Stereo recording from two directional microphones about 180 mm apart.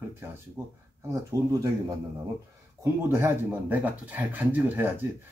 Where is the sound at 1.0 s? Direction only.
20° right (ahead or behind).